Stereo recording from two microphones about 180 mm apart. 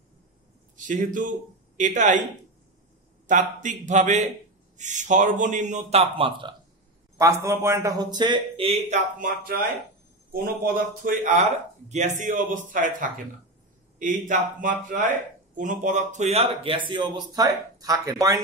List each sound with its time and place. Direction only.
0.7 s a man's voice: 45° right (ahead or behind)
3.3 s a man's voice: 45° right (ahead or behind)
7.2 s a man's voice: 15° right (ahead or behind)